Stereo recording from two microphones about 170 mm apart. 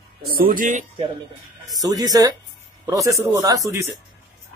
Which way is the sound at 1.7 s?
20° right (ahead or behind).